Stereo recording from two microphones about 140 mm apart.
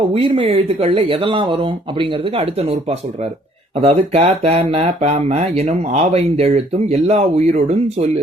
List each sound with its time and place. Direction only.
0.1 s speech: 45° right (ahead or behind)
3.8 s speech: 45° right (ahead or behind)